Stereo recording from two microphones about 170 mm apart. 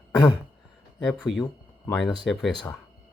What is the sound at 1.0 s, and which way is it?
Speech, 5° left (ahead or behind).